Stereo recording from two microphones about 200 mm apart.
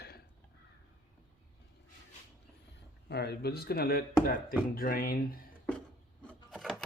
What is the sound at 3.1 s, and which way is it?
Speech, 55° left (ahead or behind).